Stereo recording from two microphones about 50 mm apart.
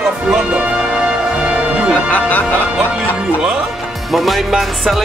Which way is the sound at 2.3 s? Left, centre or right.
Left.